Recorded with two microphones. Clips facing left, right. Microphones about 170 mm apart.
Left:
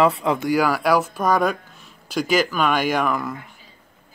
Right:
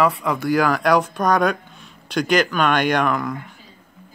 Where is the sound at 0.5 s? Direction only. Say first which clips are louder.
Right 2 dB; 5° left (ahead or behind).